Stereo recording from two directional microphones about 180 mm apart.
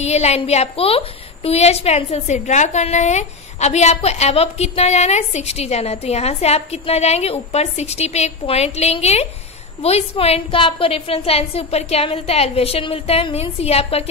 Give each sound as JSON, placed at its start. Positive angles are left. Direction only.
{"t": 0.0, "sound": "a woman's voice", "side_deg": 35}